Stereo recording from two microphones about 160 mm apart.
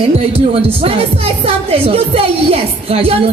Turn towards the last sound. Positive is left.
turn(degrees=-35)  # may be behind; listen again after turning